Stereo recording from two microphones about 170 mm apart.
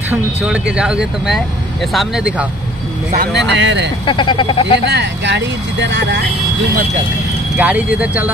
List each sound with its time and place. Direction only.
0.1 s speech: 10° right (ahead or behind)
3.3 s speech: 90° right
4.0 s speech: 30° left (ahead or behind)
4.8 s speech: 90° right
7.5 s speech: 10° right (ahead or behind)